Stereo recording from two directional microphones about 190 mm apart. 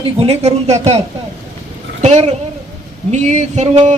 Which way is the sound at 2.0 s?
35° right (ahead or behind).